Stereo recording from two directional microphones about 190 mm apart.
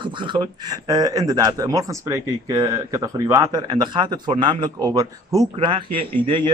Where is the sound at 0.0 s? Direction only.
25° right (ahead or behind).